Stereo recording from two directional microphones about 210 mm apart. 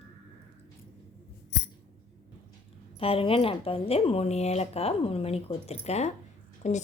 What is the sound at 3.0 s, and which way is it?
A woman's voice, 25° left (ahead or behind).